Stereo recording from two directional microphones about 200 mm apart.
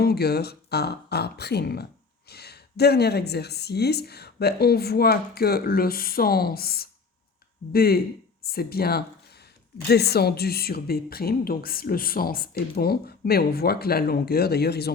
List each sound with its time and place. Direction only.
0.0 s speech: 50° left (ahead or behind)